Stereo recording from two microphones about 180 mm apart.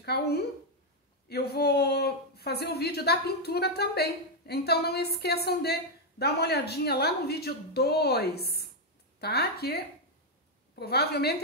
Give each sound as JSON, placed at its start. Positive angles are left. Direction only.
{"t": 0.0, "sound": "a woman's voice", "side_deg": 65}
{"t": 10.8, "sound": "speech", "side_deg": 65}